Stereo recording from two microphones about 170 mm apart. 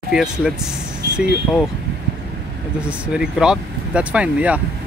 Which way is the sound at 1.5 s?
5° right (ahead or behind).